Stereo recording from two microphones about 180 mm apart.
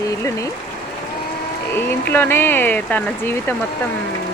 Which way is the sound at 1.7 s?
10° left (ahead or behind).